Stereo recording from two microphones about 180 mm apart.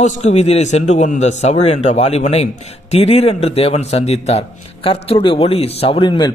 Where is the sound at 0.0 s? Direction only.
40° left (ahead or behind).